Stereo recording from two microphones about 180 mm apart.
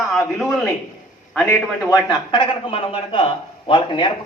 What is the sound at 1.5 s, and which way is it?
A man's voice, 15° left (ahead or behind).